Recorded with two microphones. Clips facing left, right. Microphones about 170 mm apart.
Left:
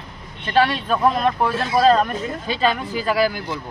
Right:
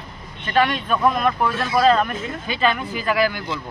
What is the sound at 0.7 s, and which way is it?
Speech, 30° left (ahead or behind).